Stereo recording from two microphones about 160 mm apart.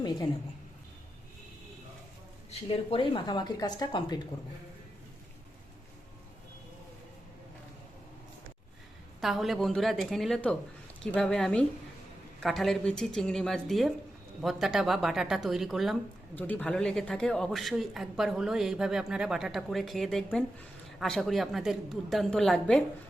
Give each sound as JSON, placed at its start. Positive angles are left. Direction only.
{"t": 0.0, "sound": "a woman's voice", "side_deg": 25}
{"t": 2.5, "sound": "a woman's voice", "side_deg": 40}
{"t": 9.2, "sound": "a man's voice", "side_deg": 0}
{"t": 16.3, "sound": "a man's voice", "side_deg": 10}